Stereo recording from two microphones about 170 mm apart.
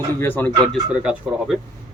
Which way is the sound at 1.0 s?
5° right (ahead or behind).